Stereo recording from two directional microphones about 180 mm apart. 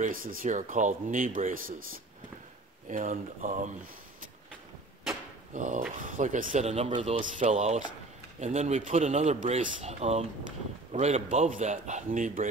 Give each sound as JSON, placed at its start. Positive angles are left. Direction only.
{"t": 0.0, "sound": "speech", "side_deg": -50}
{"t": 2.9, "sound": "speech", "side_deg": -45}
{"t": 5.5, "sound": "a man's voice", "side_deg": -45}